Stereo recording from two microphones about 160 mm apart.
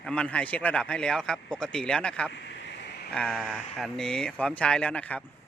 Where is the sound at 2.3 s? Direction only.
90° left.